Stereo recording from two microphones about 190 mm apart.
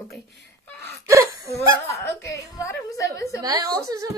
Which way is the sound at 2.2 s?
15° left (ahead or behind).